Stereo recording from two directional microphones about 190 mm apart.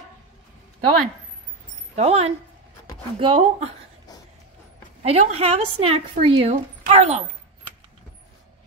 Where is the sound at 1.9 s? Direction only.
35° right (ahead or behind).